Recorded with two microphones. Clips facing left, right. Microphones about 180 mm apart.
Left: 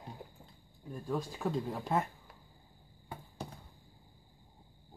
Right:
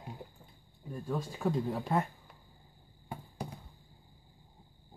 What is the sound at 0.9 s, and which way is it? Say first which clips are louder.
Speech: even; centre (ahead or behind).